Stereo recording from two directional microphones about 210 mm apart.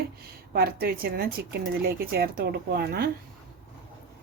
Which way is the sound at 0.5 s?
45° right (ahead or behind).